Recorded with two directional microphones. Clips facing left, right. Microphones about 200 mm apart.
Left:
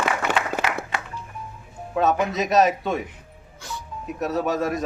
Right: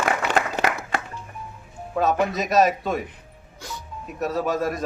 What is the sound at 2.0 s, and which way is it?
Speech, centre (ahead or behind).